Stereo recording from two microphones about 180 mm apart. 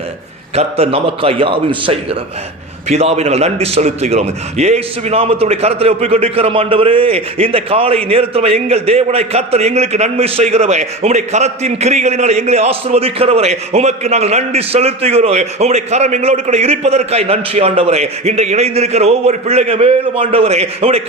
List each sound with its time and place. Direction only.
0.5 s a man's voice: 30° right (ahead or behind)